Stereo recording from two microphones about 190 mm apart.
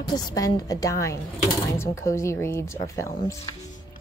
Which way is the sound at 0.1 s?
20° left (ahead or behind).